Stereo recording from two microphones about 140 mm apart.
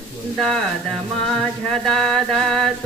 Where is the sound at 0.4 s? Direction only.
5° left (ahead or behind).